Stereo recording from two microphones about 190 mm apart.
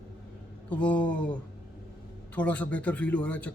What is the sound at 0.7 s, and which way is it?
Speech, 5° left (ahead or behind).